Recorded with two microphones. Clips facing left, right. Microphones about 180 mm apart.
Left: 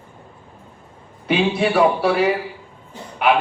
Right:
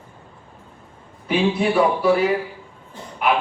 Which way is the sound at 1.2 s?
75° left (ahead or behind).